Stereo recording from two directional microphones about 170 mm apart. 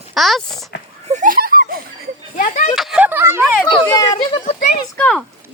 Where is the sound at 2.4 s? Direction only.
45° left (ahead or behind).